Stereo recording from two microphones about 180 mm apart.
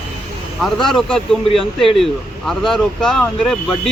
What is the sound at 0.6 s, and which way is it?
Speech, centre (ahead or behind).